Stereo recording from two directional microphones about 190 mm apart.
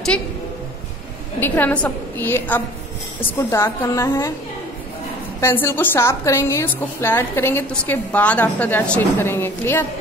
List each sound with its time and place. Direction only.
1.4 s a woman's voice: 10° left (ahead or behind)
5.4 s a woman's voice: 10° left (ahead or behind)